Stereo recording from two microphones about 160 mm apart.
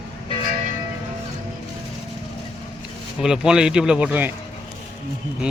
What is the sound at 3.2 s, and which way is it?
Speech, 5° right (ahead or behind).